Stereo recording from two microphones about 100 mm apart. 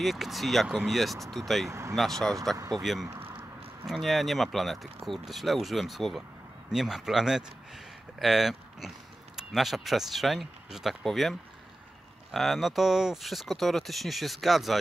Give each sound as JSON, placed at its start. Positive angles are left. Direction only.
{"t": 0.0, "sound": "speech", "side_deg": 0}
{"t": 1.7, "sound": "speech", "side_deg": -30}
{"t": 2.0, "sound": "speech", "side_deg": 5}
{"t": 2.5, "sound": "speech", "side_deg": -35}
{"t": 2.8, "sound": "speech", "side_deg": 0}